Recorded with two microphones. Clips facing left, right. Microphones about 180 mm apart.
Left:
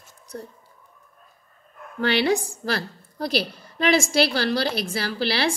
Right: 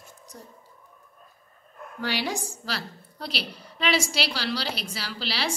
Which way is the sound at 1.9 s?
65° left (ahead or behind).